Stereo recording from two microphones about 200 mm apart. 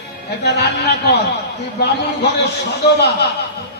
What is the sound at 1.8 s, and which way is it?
A man's voice, 55° left (ahead or behind).